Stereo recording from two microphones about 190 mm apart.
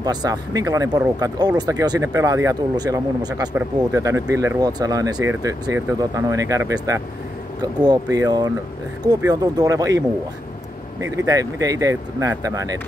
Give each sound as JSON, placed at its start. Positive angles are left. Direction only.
{"t": 0.0, "sound": "speech", "side_deg": -20}